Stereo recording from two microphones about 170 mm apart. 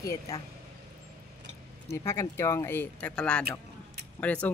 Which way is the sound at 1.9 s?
15° left (ahead or behind).